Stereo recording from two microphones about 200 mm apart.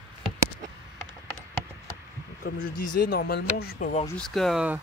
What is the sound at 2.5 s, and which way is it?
Speech, 45° left (ahead or behind).